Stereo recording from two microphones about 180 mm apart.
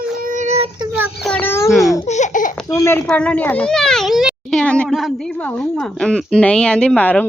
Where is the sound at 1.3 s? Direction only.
10° left (ahead or behind).